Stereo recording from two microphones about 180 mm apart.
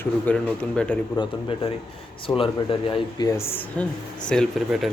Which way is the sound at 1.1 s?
30° left (ahead or behind).